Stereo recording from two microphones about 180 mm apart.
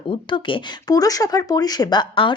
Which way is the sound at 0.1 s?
25° left (ahead or behind).